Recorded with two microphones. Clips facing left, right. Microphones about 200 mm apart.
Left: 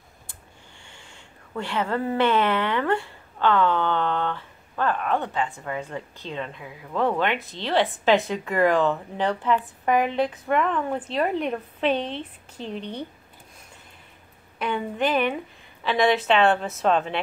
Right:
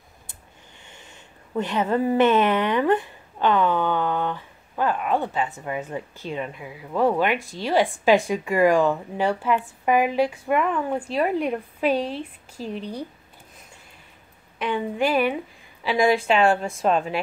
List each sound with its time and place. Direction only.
0.8 s a woman's voice: 20° right (ahead or behind)
14.6 s a woman's voice: 10° right (ahead or behind)